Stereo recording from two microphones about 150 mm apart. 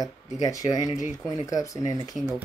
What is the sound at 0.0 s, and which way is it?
Speech, 25° left (ahead or behind).